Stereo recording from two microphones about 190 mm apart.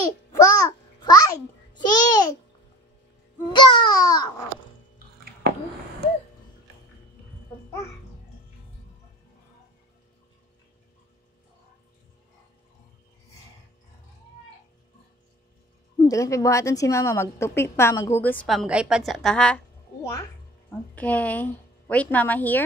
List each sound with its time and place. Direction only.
0.3 s babbling: 15° left (ahead or behind)
3.5 s a sound: 25° left (ahead or behind)
16.1 s a woman's voice: 15° left (ahead or behind)
20.0 s a woman's voice: 15° left (ahead or behind)